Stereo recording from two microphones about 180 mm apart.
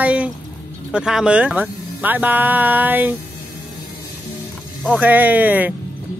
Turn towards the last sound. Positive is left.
turn(degrees=-10)  # may be behind; listen again after turning